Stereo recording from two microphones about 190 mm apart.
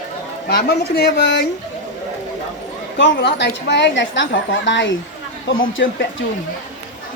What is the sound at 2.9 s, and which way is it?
A woman's voice, 65° left (ahead or behind).